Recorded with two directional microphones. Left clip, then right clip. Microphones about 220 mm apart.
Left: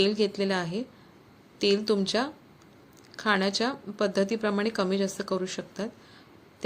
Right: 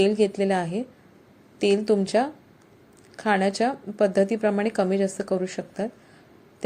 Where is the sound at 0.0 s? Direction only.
15° right (ahead or behind).